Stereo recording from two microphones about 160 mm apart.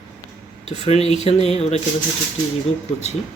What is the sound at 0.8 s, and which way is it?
Speech, 40° left (ahead or behind).